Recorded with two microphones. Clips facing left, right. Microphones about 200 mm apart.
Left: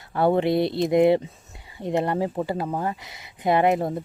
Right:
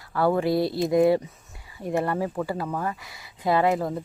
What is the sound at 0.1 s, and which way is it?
Speech, 25° left (ahead or behind).